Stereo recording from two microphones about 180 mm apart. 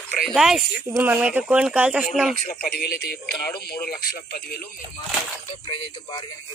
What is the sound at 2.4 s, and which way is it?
Speech, 55° left (ahead or behind).